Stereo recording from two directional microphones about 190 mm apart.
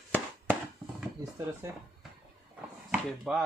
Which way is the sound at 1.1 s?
15° right (ahead or behind).